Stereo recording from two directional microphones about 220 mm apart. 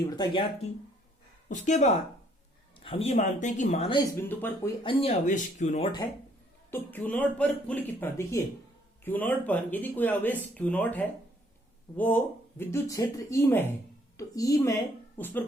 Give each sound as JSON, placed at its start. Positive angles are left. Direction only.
{"t": 0.0, "sound": "speech", "side_deg": 20}
{"t": 1.5, "sound": "speech", "side_deg": 35}
{"t": 4.3, "sound": "speech", "side_deg": 10}
{"t": 4.8, "sound": "speech", "side_deg": 25}
{"t": 6.7, "sound": "a woman's voice", "side_deg": 10}